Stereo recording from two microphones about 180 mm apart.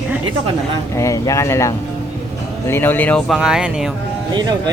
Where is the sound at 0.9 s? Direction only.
15° left (ahead or behind).